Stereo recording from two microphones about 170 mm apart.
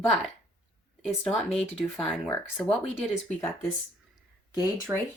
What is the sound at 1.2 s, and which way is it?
Speech, centre (ahead or behind).